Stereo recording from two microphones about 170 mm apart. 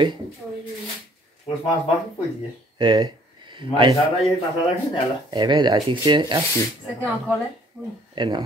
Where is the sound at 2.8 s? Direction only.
25° right (ahead or behind).